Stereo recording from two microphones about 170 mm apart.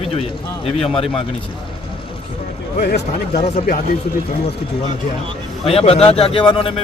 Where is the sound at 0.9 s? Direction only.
35° left (ahead or behind).